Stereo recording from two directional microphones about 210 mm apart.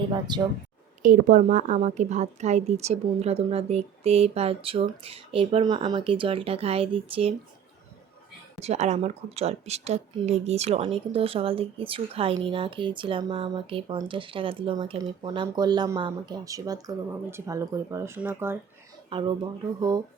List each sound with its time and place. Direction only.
0.3 s speech: 20° right (ahead or behind)
1.0 s speech: 35° right (ahead or behind)
8.6 s speech: 30° right (ahead or behind); by 18.5 s 10° right (ahead or behind)
19.1 s speech: 25° right (ahead or behind)